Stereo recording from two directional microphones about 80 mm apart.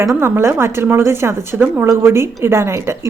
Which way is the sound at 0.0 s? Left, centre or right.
Right.